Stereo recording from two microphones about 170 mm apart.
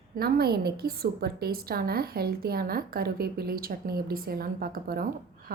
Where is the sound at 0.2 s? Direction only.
65° right (ahead or behind).